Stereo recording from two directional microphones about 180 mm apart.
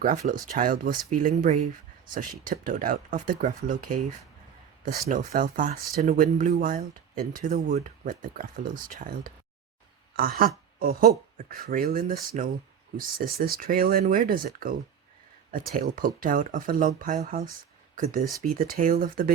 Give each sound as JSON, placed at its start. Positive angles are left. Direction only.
{"t": 0.0, "sound": "speech", "side_deg": -50}
{"t": 5.0, "sound": "speech", "side_deg": -50}
{"t": 10.2, "sound": "speech", "side_deg": -55}